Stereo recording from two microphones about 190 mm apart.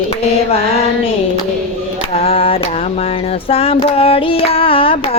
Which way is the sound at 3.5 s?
30° left (ahead or behind).